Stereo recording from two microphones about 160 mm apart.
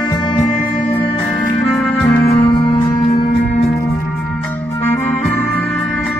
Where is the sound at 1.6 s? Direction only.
Centre (ahead or behind).